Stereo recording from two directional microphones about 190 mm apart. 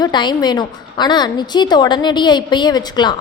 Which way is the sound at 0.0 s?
25° left (ahead or behind).